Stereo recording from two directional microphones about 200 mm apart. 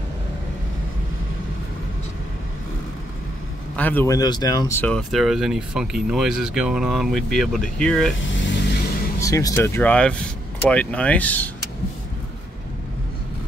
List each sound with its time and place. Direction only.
3.7 s speech: 10° left (ahead or behind)
8.3 s vehicle: 65° left (ahead or behind)
9.2 s speech: 15° left (ahead or behind)